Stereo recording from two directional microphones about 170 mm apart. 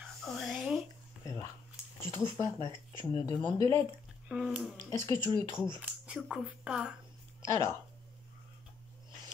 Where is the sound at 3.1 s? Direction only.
25° left (ahead or behind).